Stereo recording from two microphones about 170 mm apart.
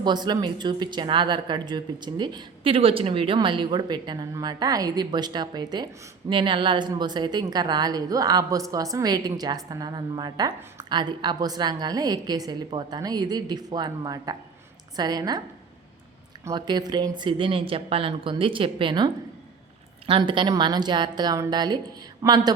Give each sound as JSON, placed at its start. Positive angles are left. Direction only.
{"t": 0.0, "sound": "speech", "side_deg": -25}
{"t": 16.4, "sound": "speech", "side_deg": -25}